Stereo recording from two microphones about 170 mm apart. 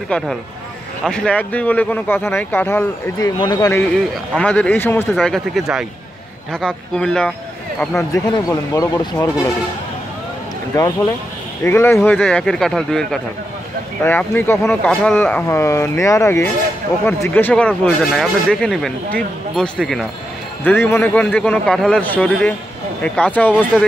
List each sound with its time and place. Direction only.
0.1 s speech: 5° left (ahead or behind)
3.3 s speech: 25° left (ahead or behind)
3.8 s speech: 10° left (ahead or behind)
5.1 s speech: centre (ahead or behind)
8.1 s speech: 20° left (ahead or behind)
11.6 s speech: 15° left (ahead or behind)